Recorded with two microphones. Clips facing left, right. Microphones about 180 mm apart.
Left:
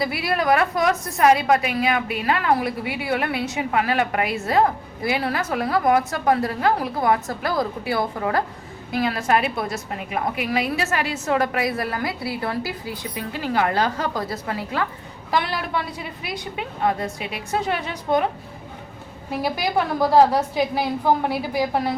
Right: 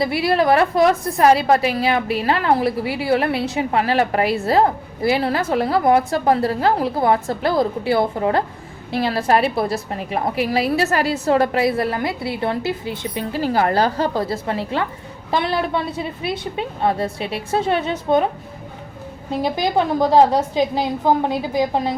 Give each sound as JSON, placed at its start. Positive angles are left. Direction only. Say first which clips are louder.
{"t": 0.0, "sound": "a woman's voice", "louder": "right 5 dB", "side_deg": -25}
{"t": 19.3, "sound": "a woman's voice", "louder": "right 3 dB", "side_deg": -20}